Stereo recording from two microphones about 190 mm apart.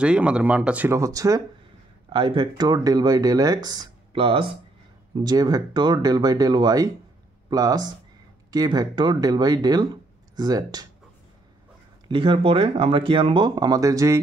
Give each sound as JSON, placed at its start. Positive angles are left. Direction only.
{"t": 0.0, "sound": "speech", "side_deg": -5}
{"t": 12.1, "sound": "speech", "side_deg": -25}